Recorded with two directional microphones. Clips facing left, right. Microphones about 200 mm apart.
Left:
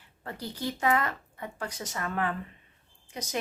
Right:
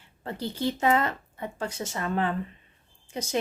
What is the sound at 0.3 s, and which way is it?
Speech, 25° right (ahead or behind).